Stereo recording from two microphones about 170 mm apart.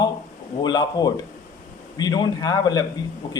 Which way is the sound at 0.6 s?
25° left (ahead or behind).